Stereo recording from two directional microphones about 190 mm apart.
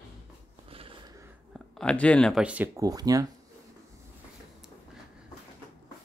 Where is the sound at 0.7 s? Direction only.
30° right (ahead or behind).